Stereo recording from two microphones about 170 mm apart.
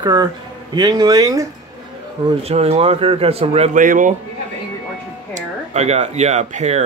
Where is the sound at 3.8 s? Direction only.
50° right (ahead or behind).